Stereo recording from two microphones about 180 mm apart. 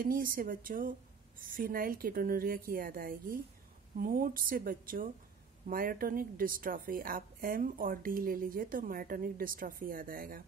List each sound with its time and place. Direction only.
0.0 s a woman's voice: 50° right (ahead or behind)